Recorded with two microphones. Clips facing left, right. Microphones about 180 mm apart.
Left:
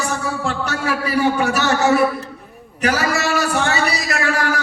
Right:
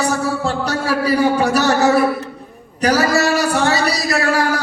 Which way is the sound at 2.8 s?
35° right (ahead or behind).